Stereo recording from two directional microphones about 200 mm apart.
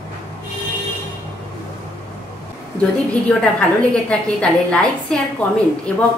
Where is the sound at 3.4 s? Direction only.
5° left (ahead or behind).